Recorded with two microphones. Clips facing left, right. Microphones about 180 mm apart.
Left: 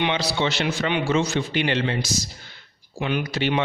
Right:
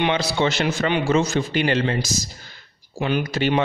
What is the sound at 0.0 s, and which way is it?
A man's voice, 50° right (ahead or behind).